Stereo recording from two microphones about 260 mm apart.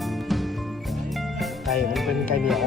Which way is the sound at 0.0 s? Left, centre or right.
Centre.